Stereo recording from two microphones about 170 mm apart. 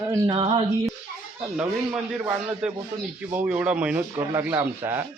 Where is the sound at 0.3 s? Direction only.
30° right (ahead or behind).